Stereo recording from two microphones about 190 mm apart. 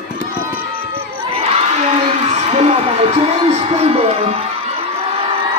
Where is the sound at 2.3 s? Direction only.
35° right (ahead or behind).